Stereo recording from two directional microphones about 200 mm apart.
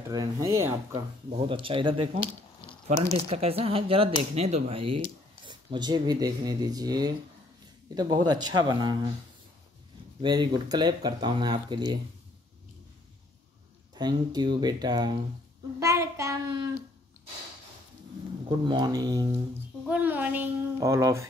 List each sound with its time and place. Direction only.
0.1 s a woman's voice: 15° right (ahead or behind)
0.9 s speech: 25° right (ahead or behind)
3.2 s speech: 30° right (ahead or behind)
10.2 s speech: 20° right (ahead or behind)
13.9 s a woman's voice: 20° right (ahead or behind)
18.5 s a woman's voice: 20° right (ahead or behind)